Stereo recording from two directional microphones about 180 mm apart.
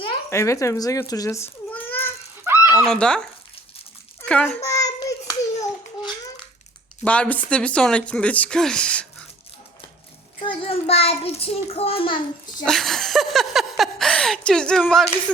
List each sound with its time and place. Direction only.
0.3 s a child's voice: 15° left (ahead or behind)
2.4 s a sound: 15° right (ahead or behind)
2.8 s speech: 5° left (ahead or behind)
4.2 s hands: 5° left (ahead or behind)
7.0 s speech: 5° left (ahead or behind)
10.4 s a child's voice: 30° left (ahead or behind)
12.6 s a sound: centre (ahead or behind)